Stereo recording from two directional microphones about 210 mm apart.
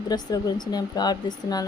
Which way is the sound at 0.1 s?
20° left (ahead or behind).